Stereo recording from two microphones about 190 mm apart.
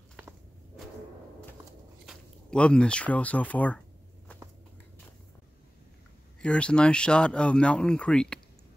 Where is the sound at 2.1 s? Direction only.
5° left (ahead or behind).